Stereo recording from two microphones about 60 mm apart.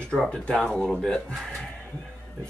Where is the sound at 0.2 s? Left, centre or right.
Centre.